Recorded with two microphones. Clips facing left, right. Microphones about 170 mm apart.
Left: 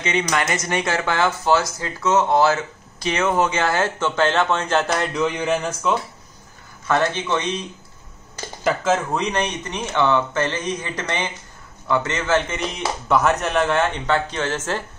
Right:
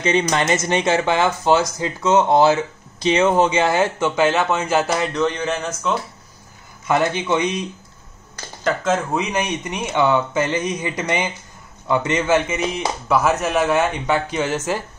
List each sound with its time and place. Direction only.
0.0 s speech: 30° right (ahead or behind); by 5.9 s 5° left (ahead or behind)
6.9 s speech: 10° right (ahead or behind)
8.6 s speech: centre (ahead or behind)